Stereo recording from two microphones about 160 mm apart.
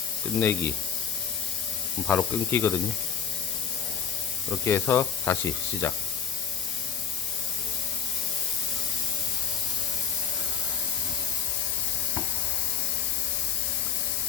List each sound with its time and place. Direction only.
0.3 s speech: 15° left (ahead or behind)
2.0 s speech: 15° left (ahead or behind)
4.6 s speech: 15° left (ahead or behind)